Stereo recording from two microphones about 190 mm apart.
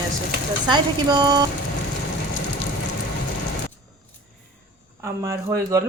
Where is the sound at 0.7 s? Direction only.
20° right (ahead or behind).